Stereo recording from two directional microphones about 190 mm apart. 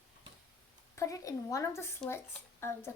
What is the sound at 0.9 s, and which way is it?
Speech, 15° left (ahead or behind).